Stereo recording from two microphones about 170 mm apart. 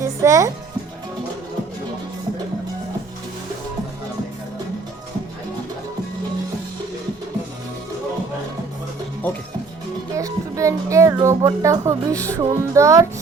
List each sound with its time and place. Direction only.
0.0 s music: 20° right (ahead or behind)
10.2 s music: 20° right (ahead or behind)